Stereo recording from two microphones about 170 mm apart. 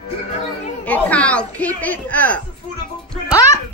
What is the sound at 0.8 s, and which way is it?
A child's voice, 10° left (ahead or behind).